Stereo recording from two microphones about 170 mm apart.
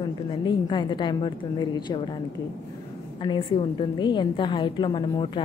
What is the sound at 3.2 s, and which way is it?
Speech, 30° left (ahead or behind).